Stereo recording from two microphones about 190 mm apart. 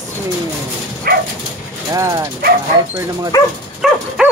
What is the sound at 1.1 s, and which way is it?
Dog, 55° right (ahead or behind).